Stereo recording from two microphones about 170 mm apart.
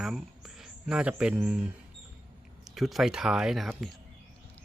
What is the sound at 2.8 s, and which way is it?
Speech, centre (ahead or behind).